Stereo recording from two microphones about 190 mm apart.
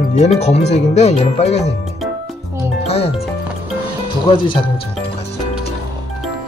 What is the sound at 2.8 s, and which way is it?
Music, 35° left (ahead or behind).